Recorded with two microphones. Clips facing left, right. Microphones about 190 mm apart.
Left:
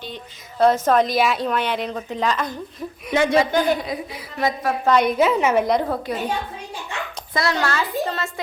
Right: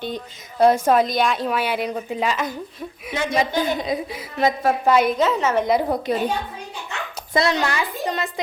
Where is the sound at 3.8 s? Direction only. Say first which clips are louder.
Right 4 dB; 25° right (ahead or behind).